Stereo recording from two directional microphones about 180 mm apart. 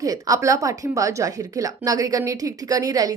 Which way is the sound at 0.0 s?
20° right (ahead or behind).